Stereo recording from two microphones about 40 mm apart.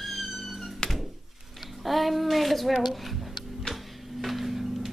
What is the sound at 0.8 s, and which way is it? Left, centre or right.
Thunk, centre.